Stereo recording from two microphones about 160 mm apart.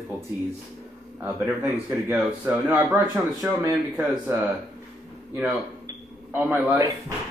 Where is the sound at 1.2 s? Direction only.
10° right (ahead or behind).